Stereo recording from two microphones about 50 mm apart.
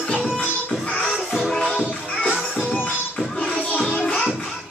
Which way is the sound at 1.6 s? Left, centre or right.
Left.